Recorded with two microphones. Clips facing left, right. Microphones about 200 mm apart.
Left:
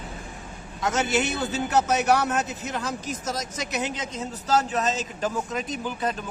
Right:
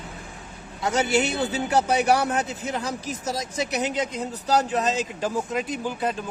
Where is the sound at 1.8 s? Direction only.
10° right (ahead or behind).